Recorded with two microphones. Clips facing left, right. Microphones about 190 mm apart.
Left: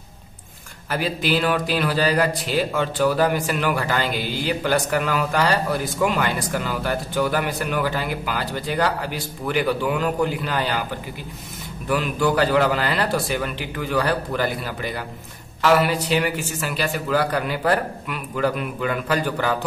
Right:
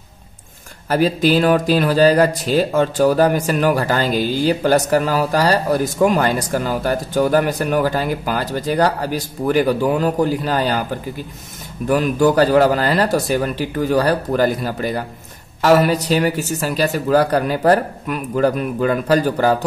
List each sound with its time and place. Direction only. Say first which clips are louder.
0.8 s speech: right 8 dB; 40° right (ahead or behind)